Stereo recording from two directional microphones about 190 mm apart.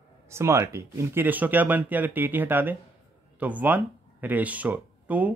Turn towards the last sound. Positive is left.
turn(degrees=-10)  # may be behind; listen again after turning